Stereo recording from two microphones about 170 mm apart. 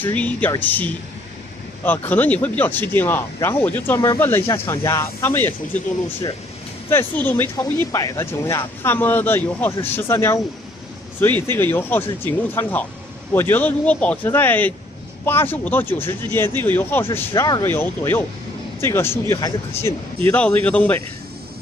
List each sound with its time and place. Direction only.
0.0 s speech: 10° left (ahead or behind)